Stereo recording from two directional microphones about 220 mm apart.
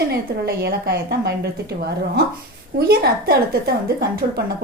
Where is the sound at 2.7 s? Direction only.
45° right (ahead or behind).